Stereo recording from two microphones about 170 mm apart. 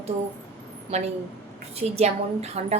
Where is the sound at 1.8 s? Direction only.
40° right (ahead or behind).